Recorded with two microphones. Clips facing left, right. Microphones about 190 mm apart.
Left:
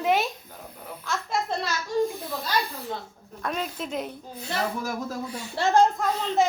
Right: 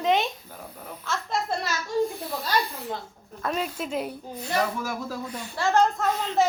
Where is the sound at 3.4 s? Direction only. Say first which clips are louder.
Right 2 dB; centre (ahead or behind).